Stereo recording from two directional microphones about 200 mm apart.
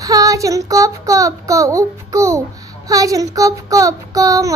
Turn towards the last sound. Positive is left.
turn(degrees=-15)  # may be behind; listen again after turning